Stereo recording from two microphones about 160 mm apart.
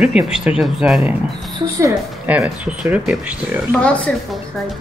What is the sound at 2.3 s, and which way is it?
Speech, 10° right (ahead or behind).